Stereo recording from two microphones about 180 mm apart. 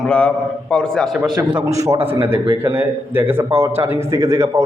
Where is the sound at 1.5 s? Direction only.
15° right (ahead or behind).